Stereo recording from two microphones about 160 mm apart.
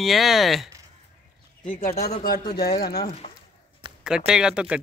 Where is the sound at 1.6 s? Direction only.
50° left (ahead or behind).